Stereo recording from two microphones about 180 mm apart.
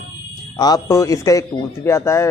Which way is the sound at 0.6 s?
20° left (ahead or behind).